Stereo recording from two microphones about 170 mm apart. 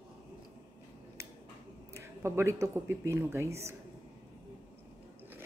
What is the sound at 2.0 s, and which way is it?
Speech, 15° right (ahead or behind).